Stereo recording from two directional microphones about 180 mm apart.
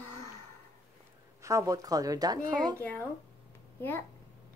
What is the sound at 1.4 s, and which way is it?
Speech, 15° right (ahead or behind).